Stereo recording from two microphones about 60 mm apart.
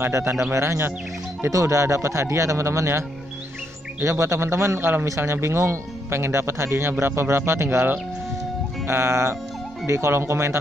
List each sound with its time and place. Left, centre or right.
0.0 s speech: right
1.5 s speech: right